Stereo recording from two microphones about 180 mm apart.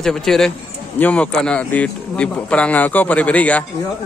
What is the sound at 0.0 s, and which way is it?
Speech, centre (ahead or behind).